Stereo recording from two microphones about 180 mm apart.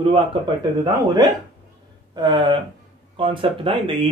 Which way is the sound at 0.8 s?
25° right (ahead or behind).